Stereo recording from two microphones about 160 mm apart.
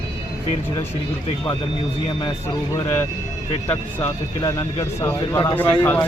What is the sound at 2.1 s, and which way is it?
Speech, 25° left (ahead or behind).